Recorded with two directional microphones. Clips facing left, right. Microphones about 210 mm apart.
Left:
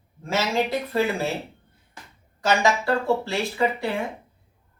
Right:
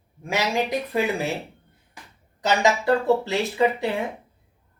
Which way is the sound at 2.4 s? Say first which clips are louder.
Even; 20° right (ahead or behind).